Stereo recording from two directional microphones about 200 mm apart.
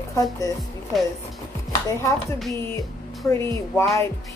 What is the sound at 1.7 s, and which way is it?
Chopping, 15° left (ahead or behind).